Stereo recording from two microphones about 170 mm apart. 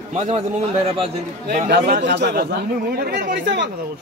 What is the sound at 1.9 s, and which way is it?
Speech, 90° right.